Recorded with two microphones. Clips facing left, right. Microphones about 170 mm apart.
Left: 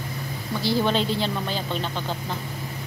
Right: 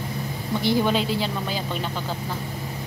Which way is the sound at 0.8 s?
5° right (ahead or behind).